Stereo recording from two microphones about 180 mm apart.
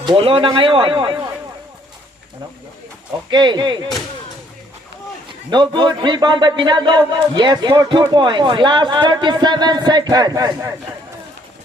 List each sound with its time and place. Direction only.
0.0 s speech: 25° right (ahead or behind)
3.2 s speech: 25° right (ahead or behind)
5.5 s speech: 25° right (ahead or behind)